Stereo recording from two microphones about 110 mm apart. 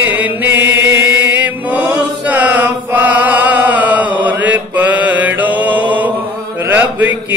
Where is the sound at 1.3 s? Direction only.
15° right (ahead or behind).